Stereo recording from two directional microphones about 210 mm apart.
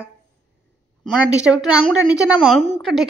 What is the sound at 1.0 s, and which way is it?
A woman's voice, centre (ahead or behind).